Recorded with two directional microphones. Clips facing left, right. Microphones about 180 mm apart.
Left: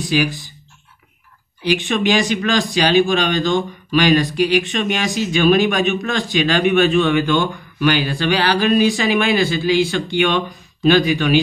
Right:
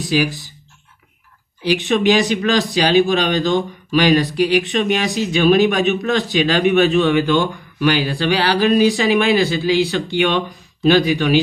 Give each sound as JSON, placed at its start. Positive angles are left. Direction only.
{"t": 1.6, "sound": "speech", "side_deg": -40}
{"t": 9.4, "sound": "speech", "side_deg": 50}
{"t": 9.8, "sound": "speech", "side_deg": -35}